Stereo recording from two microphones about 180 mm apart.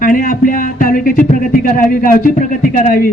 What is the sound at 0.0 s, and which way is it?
A man's voice, 50° left (ahead or behind).